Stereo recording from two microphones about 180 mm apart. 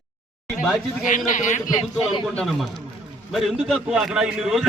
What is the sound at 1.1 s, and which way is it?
Speech, 45° left (ahead or behind).